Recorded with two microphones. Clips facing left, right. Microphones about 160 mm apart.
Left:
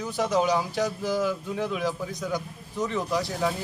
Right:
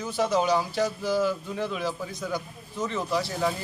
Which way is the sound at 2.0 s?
Centre (ahead or behind).